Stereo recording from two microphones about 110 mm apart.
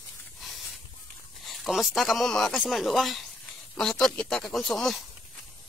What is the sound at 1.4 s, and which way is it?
Speech, centre (ahead or behind).